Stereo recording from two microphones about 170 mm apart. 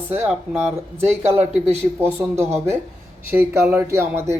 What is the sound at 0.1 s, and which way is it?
Speech, 10° right (ahead or behind).